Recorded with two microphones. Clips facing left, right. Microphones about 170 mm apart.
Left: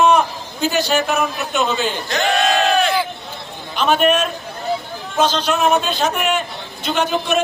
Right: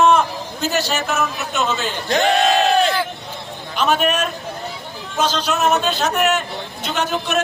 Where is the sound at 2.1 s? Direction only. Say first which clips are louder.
Right 3 dB; 30° right (ahead or behind).